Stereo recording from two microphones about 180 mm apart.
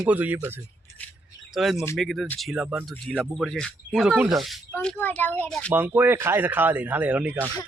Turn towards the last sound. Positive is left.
turn(degrees=-10)  # may be behind; listen again after turning